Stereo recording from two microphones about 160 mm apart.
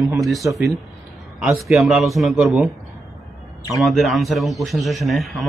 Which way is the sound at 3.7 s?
Centre (ahead or behind).